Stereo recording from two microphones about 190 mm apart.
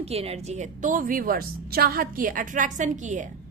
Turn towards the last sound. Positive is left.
turn(degrees=-40)  # may be behind; listen again after turning